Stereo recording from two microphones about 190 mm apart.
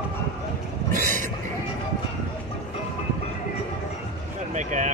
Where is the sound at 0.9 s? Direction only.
45° right (ahead or behind).